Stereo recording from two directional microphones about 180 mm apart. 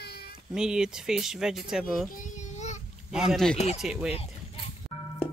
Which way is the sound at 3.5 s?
40° left (ahead or behind).